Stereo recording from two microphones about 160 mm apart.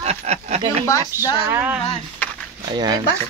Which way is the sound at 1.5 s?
10° right (ahead or behind).